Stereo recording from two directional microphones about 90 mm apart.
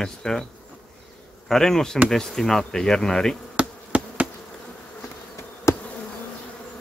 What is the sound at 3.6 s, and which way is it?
Insect, 10° right (ahead or behind).